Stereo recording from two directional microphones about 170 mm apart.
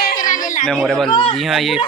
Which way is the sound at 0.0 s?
50° left (ahead or behind).